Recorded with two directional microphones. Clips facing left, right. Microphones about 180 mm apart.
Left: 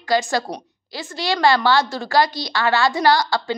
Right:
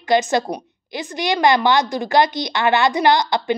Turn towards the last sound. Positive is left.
turn(degrees=-20)  # may be behind; listen again after turning